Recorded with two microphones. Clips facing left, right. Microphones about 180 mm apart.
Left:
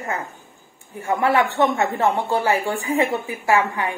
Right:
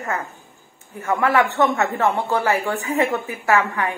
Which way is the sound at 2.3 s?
20° left (ahead or behind).